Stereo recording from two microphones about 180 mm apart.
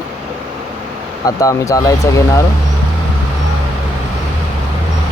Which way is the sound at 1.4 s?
20° left (ahead or behind).